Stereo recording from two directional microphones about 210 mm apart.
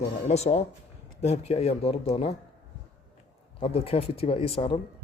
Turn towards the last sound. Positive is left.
turn(degrees=25)  # may be behind; listen again after turning